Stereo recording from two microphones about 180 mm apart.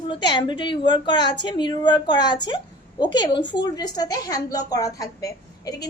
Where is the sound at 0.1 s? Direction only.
25° left (ahead or behind).